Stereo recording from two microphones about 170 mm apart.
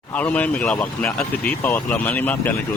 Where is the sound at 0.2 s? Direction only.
10° left (ahead or behind).